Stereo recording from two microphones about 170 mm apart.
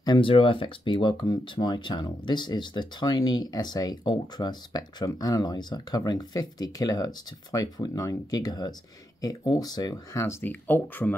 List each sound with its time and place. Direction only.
0.0 s speech: 30° left (ahead or behind); by 11.1 s 10° left (ahead or behind)